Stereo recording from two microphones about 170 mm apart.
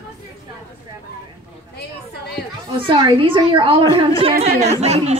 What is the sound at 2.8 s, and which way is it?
A child's voice, 30° right (ahead or behind).